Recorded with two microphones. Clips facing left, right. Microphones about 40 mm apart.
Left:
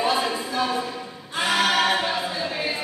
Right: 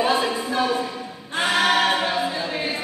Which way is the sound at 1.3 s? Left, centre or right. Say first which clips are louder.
Right 2 dB; right.